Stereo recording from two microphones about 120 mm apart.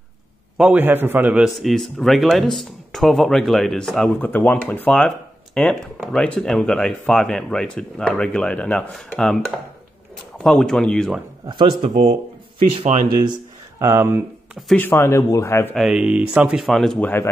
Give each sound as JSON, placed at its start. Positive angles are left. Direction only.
{"t": 0.6, "sound": "speech", "side_deg": -10}
{"t": 12.5, "sound": "speech", "side_deg": -50}
{"t": 13.7, "sound": "speech", "side_deg": -20}
{"t": 14.8, "sound": "speech", "side_deg": 20}
{"t": 15.7, "sound": "speech", "side_deg": -5}
{"t": 17.0, "sound": "speech", "side_deg": 15}